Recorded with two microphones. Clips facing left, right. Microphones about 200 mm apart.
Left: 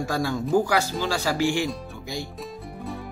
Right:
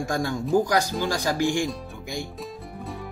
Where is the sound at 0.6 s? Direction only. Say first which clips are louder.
Right 1 dB; 15° right (ahead or behind).